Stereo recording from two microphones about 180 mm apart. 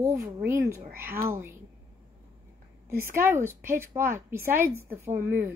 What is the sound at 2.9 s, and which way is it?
A woman's voice, 15° right (ahead or behind).